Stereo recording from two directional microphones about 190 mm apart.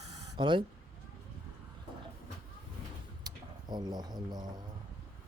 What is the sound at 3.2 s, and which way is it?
Speech, 20° right (ahead or behind).